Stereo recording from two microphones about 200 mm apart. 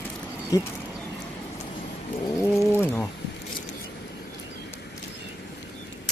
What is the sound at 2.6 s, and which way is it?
Bird, 10° left (ahead or behind).